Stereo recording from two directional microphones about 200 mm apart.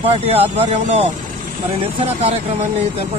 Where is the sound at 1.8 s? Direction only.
30° right (ahead or behind).